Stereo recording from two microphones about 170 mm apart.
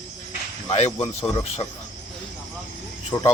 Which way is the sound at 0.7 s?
40° left (ahead or behind).